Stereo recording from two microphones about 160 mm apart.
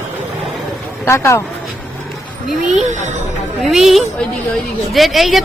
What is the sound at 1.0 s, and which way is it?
Speech, 15° left (ahead or behind).